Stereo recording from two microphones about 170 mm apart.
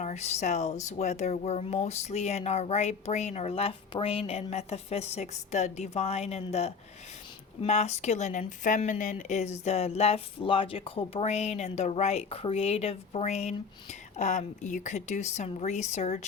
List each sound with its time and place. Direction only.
0.0 s a woman's voice: 40° left (ahead or behind)